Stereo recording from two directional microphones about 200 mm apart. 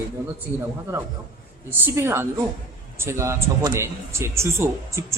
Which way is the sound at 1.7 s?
10° right (ahead or behind).